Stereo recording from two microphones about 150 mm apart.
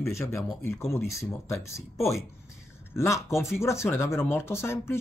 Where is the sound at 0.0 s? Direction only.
15° left (ahead or behind).